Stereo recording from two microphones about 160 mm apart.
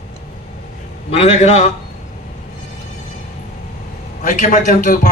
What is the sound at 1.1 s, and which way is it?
Speech, 40° left (ahead or behind).